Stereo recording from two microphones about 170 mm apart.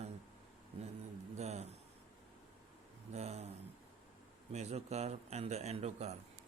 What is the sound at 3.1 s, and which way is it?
Speech, 40° right (ahead or behind).